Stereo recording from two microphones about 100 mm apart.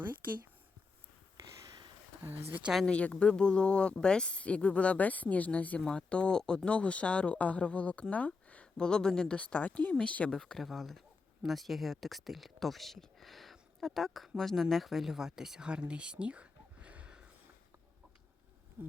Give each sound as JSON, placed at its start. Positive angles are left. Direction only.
{"t": 2.5, "sound": "speech", "side_deg": -15}
{"t": 2.7, "sound": "speech", "side_deg": 10}
{"t": 18.8, "sound": "patter", "side_deg": -15}